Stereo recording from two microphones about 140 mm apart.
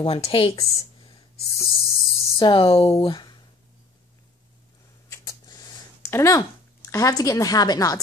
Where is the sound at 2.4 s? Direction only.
40° left (ahead or behind).